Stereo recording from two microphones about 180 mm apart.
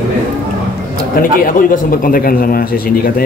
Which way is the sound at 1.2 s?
50° left (ahead or behind).